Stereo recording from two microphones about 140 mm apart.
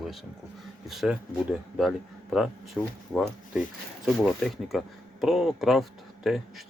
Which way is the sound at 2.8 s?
Centre (ahead or behind).